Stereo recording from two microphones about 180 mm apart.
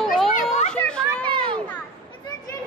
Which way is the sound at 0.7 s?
5° left (ahead or behind).